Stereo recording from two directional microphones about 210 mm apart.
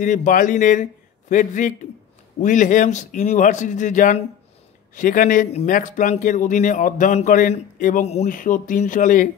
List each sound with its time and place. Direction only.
0.0 s speech: 40° left (ahead or behind)